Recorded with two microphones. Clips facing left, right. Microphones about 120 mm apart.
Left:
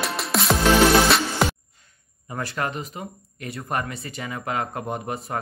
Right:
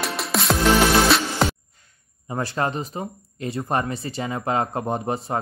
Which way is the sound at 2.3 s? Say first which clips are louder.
Right 4 dB; 30° right (ahead or behind).